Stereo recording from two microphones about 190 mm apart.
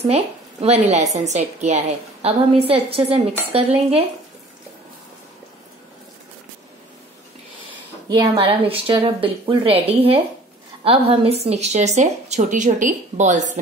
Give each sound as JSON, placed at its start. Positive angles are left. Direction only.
{"t": 0.0, "sound": "speech", "side_deg": -35}
{"t": 8.1, "sound": "speech", "side_deg": -25}